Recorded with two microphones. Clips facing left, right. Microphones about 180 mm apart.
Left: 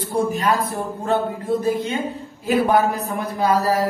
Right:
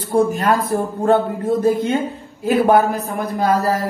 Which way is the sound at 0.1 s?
50° right (ahead or behind).